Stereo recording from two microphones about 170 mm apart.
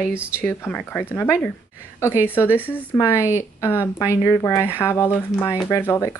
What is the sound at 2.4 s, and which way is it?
Speech, 10° right (ahead or behind).